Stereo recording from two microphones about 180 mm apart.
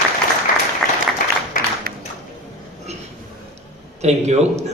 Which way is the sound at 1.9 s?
55° right (ahead or behind).